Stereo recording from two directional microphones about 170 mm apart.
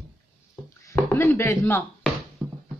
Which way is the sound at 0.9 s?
10° left (ahead or behind).